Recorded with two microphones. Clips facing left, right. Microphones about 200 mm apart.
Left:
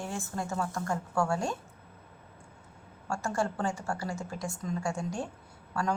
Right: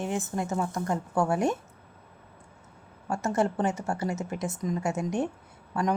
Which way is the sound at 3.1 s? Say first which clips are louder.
Right 5 dB; 20° right (ahead or behind).